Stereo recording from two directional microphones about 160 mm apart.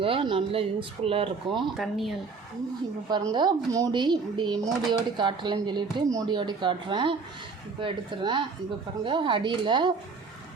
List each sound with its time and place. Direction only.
0.0 s speech: 35° right (ahead or behind)
1.7 s speech: centre (ahead or behind)
3.1 s speech: 25° right (ahead or behind)